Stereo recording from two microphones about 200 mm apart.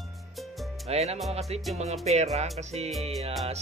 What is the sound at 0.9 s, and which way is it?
Music, 30° right (ahead or behind).